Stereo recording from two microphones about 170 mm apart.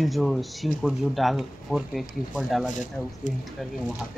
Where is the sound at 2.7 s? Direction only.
50° left (ahead or behind).